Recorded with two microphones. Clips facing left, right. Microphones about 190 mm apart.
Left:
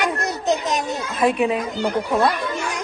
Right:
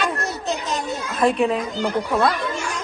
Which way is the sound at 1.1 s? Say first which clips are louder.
Even; 5° left (ahead or behind).